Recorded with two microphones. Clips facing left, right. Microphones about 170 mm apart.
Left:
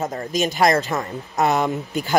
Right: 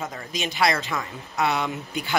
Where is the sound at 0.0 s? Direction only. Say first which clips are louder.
Left 8 dB; 45° left (ahead or behind).